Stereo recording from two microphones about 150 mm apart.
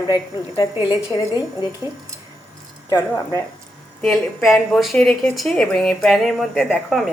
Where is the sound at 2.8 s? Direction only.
25° left (ahead or behind).